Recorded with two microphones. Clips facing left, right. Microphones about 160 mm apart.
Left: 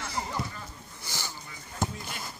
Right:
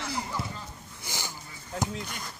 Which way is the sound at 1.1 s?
15° right (ahead or behind).